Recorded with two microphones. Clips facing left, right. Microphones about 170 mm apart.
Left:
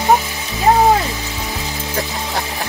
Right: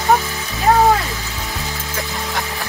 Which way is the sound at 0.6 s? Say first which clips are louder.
Left 1 dB; 20° left (ahead or behind).